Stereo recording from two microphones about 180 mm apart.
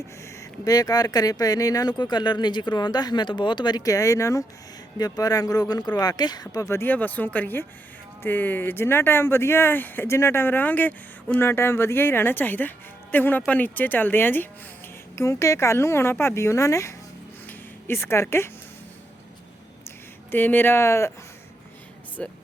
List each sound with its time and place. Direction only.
0.3 s speech: 20° left (ahead or behind)
20.3 s speech: 10° left (ahead or behind)
22.2 s speech: 5° left (ahead or behind)